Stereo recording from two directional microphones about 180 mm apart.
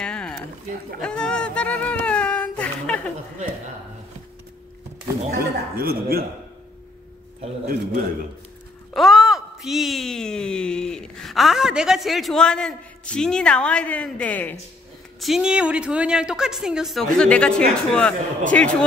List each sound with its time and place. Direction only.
0.0 s a sound: 5° left (ahead or behind)
5.4 s a man's voice: 55° right (ahead or behind)
8.9 s a woman's voice: centre (ahead or behind)
15.1 s a woman's voice: centre (ahead or behind)